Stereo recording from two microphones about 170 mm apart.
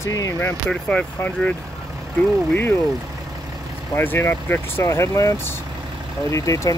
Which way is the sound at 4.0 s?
15° left (ahead or behind).